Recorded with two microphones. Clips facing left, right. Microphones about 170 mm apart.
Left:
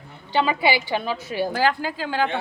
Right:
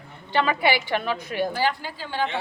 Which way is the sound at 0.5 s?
25° left (ahead or behind).